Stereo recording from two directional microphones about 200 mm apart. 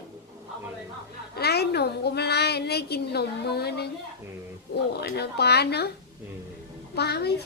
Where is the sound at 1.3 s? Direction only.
55° left (ahead or behind).